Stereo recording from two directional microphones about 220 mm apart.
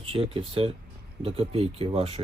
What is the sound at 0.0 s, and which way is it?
Speech, 25° right (ahead or behind).